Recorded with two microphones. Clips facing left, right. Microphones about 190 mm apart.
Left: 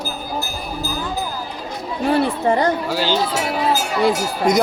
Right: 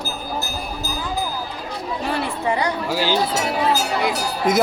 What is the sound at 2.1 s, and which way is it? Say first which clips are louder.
Speech: left 7 dB; 45° left (ahead or behind).